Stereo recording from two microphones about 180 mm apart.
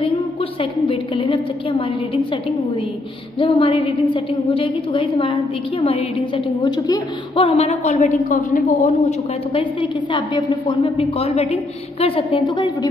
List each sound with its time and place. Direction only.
0.0 s a woman's voice: 30° left (ahead or behind)
3.3 s a woman's voice: 30° left (ahead or behind); by 8.9 s 45° left (ahead or behind)
9.5 s a woman's voice: 30° left (ahead or behind)